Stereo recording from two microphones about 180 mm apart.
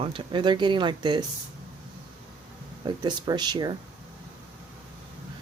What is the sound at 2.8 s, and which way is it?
Speech, 25° right (ahead or behind).